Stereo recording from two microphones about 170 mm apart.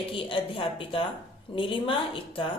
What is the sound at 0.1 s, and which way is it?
Speech, 30° left (ahead or behind).